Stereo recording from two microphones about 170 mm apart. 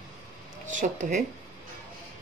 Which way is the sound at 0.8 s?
45° right (ahead or behind).